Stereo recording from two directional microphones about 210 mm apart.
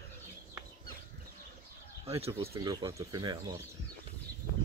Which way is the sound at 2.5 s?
20° right (ahead or behind).